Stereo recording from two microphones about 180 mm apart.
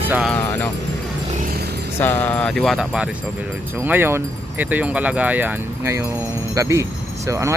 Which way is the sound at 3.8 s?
10° right (ahead or behind).